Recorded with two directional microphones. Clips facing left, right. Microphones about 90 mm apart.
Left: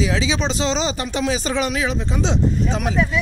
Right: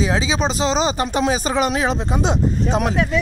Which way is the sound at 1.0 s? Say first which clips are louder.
Right 3 dB; 35° right (ahead or behind).